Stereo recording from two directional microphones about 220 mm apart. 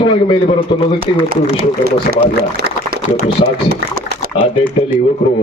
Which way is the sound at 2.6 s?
45° right (ahead or behind).